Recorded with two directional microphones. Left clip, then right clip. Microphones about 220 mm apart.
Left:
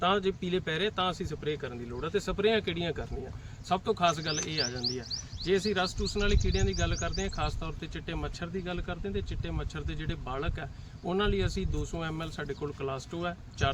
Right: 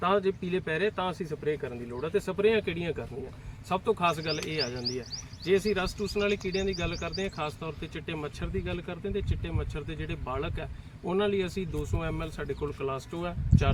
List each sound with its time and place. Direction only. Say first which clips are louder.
0.0 s speech: right 1 dB; 20° left (ahead or behind)